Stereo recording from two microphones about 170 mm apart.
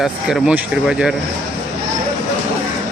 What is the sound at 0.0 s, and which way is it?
Speech, 5° right (ahead or behind).